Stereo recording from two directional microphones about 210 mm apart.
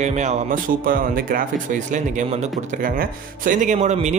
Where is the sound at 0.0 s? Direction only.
35° right (ahead or behind).